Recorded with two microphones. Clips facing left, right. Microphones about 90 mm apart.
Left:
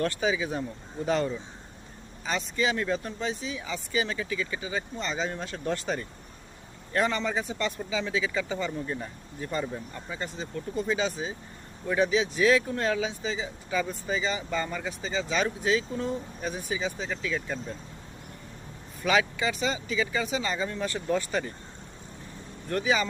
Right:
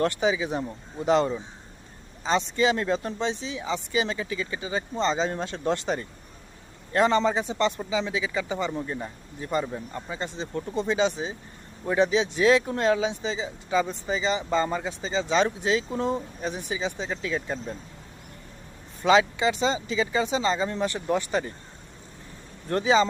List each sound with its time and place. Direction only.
0.0 s speech: 20° right (ahead or behind)
19.0 s speech: 25° right (ahead or behind)
22.7 s speech: 25° right (ahead or behind)